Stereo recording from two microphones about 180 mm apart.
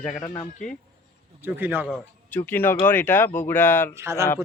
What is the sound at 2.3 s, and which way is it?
Speech, 10° left (ahead or behind).